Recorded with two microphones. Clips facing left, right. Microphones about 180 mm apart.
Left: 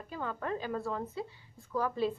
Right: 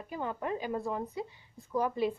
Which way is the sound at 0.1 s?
15° right (ahead or behind).